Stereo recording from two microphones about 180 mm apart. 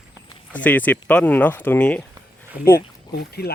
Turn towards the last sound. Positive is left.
turn(degrees=60)  # may be behind; listen again after turning